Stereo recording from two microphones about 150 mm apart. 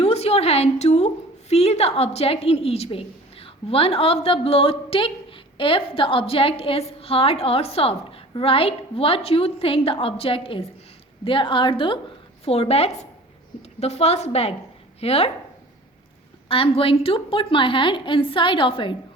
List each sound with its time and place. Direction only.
0.0 s a woman's voice: 45° left (ahead or behind)
16.5 s a woman's voice: 35° left (ahead or behind)